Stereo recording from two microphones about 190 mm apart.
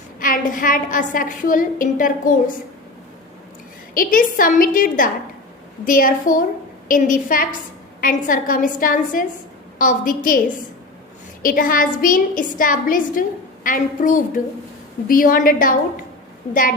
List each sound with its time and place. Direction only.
0.2 s a woman's voice: 45° left (ahead or behind)
3.9 s a woman's voice: 45° left (ahead or behind)
11.4 s a woman's voice: 50° left (ahead or behind)